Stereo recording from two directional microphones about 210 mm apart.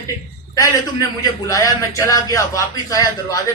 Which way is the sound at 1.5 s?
15° left (ahead or behind).